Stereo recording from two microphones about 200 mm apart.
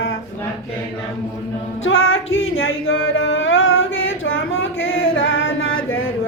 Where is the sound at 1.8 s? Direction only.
85° left.